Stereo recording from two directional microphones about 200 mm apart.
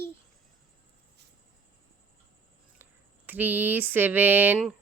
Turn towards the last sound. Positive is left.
turn(degrees=-5)  # may be behind; listen again after turning